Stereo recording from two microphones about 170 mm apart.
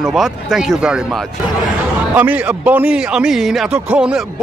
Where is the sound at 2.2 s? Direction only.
10° right (ahead or behind).